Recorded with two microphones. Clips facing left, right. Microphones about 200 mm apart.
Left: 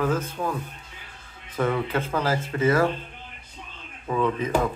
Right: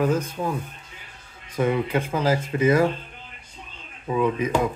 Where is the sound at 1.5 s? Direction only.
15° right (ahead or behind).